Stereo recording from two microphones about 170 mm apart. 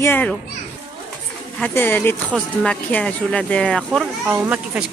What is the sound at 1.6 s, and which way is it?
Speech, 10° left (ahead or behind).